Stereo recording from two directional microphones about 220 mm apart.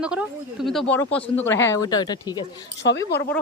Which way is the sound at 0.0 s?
5° right (ahead or behind).